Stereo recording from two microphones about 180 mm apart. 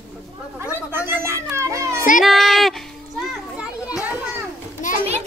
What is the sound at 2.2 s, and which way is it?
Speech, centre (ahead or behind).